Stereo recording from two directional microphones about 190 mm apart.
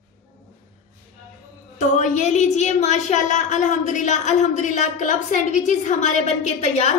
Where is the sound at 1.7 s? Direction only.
40° left (ahead or behind).